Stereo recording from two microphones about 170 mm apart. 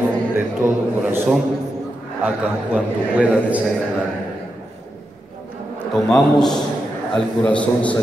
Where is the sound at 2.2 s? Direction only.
5° right (ahead or behind).